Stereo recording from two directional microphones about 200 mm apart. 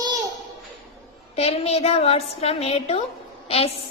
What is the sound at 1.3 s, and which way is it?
A woman's voice, 30° left (ahead or behind).